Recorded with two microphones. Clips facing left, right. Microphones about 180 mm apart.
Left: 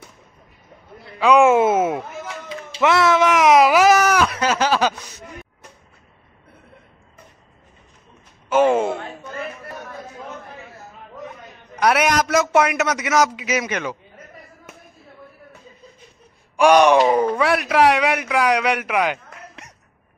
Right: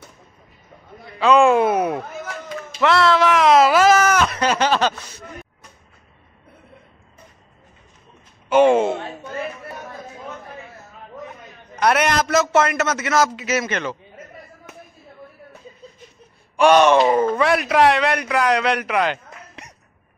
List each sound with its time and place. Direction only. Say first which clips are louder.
1.2 s speech: left 1 dB; 15° left (ahead or behind)
2.8 s a sound: even; 15° left (ahead or behind)
8.5 s speech: right 2 dB; 5° left (ahead or behind)
11.8 s a man's voice: even; 10° left (ahead or behind)
16.5 s a man's voice: even; 10° left (ahead or behind)
17.0 s a man's voice: even; centre (ahead or behind)